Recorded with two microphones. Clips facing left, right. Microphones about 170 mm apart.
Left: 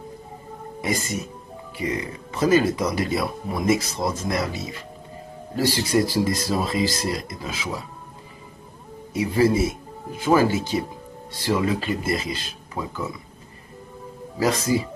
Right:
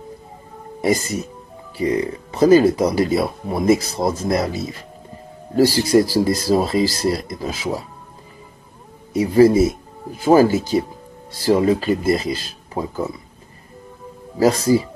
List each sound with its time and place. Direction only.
0.7 s speech: 35° right (ahead or behind)
9.1 s speech: 40° right (ahead or behind)
14.4 s speech: 35° right (ahead or behind)